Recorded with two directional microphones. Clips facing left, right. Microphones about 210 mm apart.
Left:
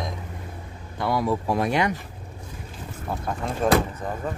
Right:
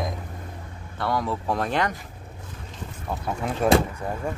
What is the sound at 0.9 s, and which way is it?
Speech, 10° left (ahead or behind).